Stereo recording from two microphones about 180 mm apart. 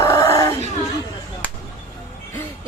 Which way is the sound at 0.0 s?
15° left (ahead or behind).